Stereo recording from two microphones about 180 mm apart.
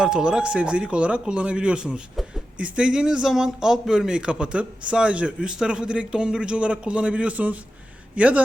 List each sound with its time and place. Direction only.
0.0 s speech: 5° right (ahead or behind)